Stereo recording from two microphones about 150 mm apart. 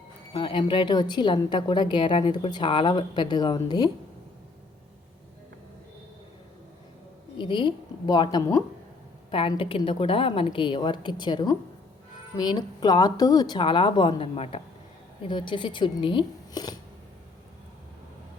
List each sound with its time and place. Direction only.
0.3 s a woman's voice: 35° left (ahead or behind)
7.3 s a woman's voice: 30° left (ahead or behind)
9.3 s a woman's voice: 35° left (ahead or behind)